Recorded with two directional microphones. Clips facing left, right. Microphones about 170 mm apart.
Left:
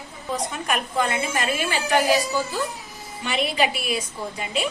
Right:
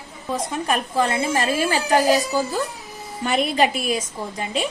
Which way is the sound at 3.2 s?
45° right (ahead or behind).